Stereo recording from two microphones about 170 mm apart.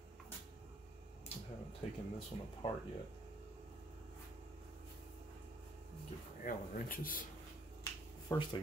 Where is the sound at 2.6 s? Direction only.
25° left (ahead or behind).